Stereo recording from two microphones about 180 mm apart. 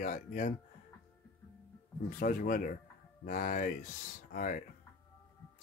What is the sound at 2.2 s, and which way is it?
Speech, 50° left (ahead or behind).